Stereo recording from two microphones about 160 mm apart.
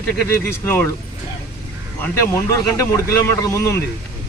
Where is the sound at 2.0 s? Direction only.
15° left (ahead or behind).